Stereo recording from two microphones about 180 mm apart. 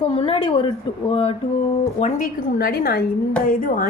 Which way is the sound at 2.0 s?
45° left (ahead or behind).